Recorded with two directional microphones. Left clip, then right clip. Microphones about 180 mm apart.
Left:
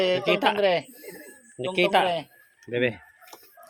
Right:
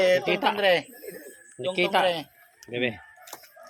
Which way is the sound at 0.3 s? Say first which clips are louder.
Left 2 dB; 45° left (ahead or behind).